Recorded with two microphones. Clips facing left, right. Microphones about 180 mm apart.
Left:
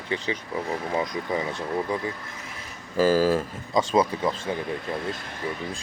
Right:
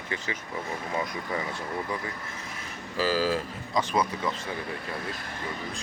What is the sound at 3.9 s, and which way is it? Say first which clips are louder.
Speech: left 7 dB; 30° left (ahead or behind).